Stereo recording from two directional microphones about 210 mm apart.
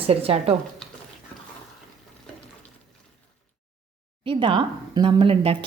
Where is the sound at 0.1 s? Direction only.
30° right (ahead or behind).